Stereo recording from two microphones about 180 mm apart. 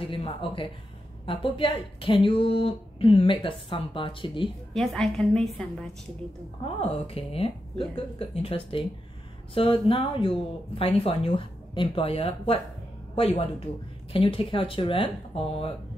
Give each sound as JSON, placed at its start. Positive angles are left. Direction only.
{"t": 0.1, "sound": "speech", "side_deg": 30}
{"t": 4.7, "sound": "a woman's voice", "side_deg": 0}
{"t": 6.6, "sound": "a woman's voice", "side_deg": 30}